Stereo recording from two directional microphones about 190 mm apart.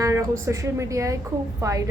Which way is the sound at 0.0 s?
15° right (ahead or behind).